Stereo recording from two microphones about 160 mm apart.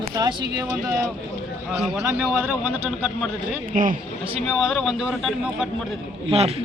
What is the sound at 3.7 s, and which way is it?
Speech, 55° right (ahead or behind).